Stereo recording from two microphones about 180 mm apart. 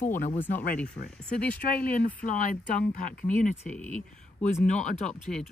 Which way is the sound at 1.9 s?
45° left (ahead or behind).